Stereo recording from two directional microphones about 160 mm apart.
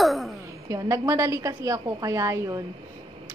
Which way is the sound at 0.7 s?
20° right (ahead or behind).